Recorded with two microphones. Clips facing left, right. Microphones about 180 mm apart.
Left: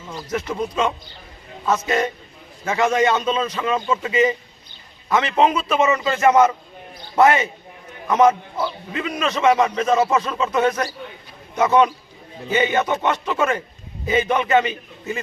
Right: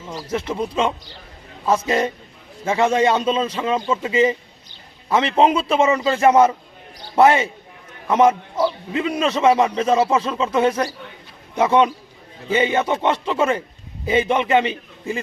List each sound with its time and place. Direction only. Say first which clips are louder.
0.3 s a man's voice: right 1 dB; 30° right (ahead or behind)